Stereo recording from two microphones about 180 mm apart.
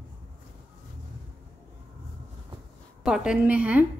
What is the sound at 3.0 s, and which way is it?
Speech, 5° right (ahead or behind).